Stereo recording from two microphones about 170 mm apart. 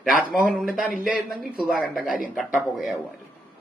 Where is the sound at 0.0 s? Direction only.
Centre (ahead or behind).